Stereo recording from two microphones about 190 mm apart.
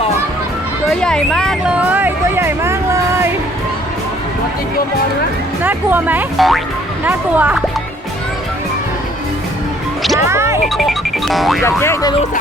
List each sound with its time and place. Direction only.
0.9 s music: 5° left (ahead or behind); by 3.3 s 15° right (ahead or behind)
5.6 s speech: 10° right (ahead or behind)
10.2 s music: 15° right (ahead or behind)
11.3 s speech: centre (ahead or behind)
11.6 s speech: 15° left (ahead or behind)